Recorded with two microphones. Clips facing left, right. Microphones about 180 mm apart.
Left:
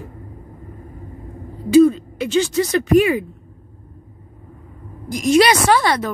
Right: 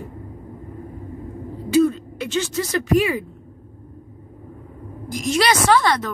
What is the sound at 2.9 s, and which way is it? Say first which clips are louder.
Speech: left 4 dB; 55° left (ahead or behind).